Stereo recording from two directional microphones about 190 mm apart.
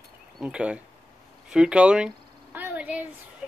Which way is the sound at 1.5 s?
5° right (ahead or behind).